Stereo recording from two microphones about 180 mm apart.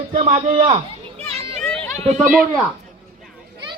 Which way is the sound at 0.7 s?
35° right (ahead or behind).